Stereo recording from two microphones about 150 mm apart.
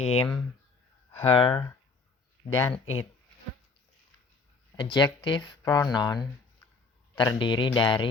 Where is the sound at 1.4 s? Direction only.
30° left (ahead or behind).